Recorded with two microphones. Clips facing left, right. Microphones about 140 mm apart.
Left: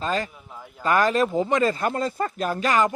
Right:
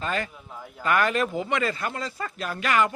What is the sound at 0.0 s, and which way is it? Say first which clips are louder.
Speech: left 3 dB; 35° left (ahead or behind).